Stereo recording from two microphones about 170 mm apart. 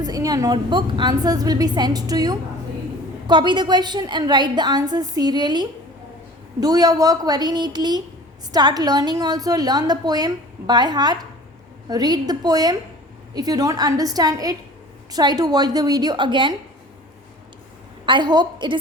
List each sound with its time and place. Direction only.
0.0 s a woman's voice: 20° right (ahead or behind)
18.0 s a woman's voice: 30° right (ahead or behind)